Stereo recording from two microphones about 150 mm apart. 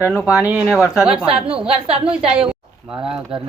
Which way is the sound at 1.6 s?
40° right (ahead or behind).